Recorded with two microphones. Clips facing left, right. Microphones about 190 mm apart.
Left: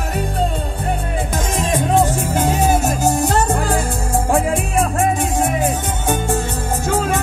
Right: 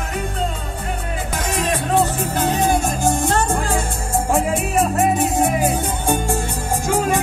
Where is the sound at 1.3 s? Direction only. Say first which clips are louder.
Left 1 dB; 50° left (ahead or behind).